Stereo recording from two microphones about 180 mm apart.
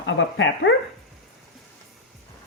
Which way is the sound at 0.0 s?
90° left.